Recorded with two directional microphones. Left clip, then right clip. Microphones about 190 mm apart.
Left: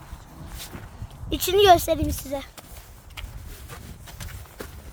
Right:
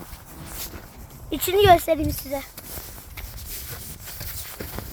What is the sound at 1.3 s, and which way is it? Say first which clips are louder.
Speech: even; 5° left (ahead or behind).